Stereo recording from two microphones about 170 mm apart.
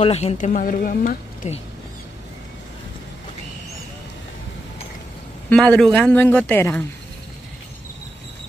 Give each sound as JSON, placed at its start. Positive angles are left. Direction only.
{"t": 0.0, "sound": "a woman's voice", "side_deg": 40}
{"t": 5.5, "sound": "speech", "side_deg": 5}